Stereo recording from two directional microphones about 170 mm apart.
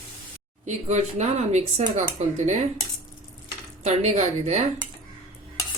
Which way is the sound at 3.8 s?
40° right (ahead or behind).